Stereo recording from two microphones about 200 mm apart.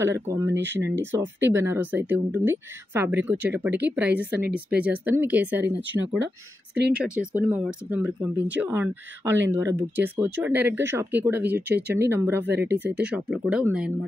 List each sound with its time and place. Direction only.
0.0 s speech: 15° right (ahead or behind)
5.8 s speech: 65° right (ahead or behind)
6.9 s speech: 5° right (ahead or behind)